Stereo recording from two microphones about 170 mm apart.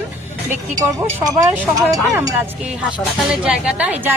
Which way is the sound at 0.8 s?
20° right (ahead or behind).